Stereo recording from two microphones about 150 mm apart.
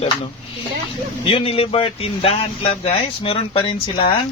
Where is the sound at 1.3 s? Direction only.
40° left (ahead or behind).